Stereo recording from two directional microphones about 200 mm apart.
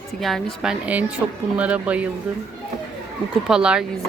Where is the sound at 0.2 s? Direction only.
Centre (ahead or behind).